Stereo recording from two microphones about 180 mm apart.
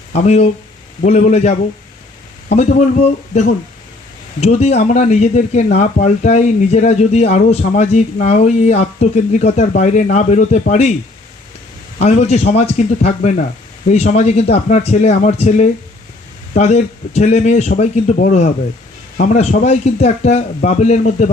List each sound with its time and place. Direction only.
0.1 s speech: 40° left (ahead or behind)
11.9 s speech: 40° left (ahead or behind)